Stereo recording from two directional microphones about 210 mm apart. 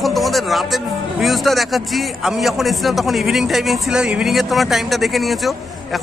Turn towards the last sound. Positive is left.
turn(degrees=0)  # may be behind; listen again after turning